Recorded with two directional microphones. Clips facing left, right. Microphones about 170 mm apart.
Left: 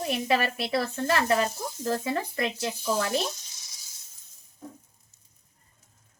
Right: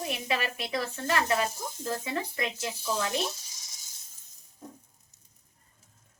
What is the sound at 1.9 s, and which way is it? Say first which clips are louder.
Speech: left 5 dB; 45° left (ahead or behind).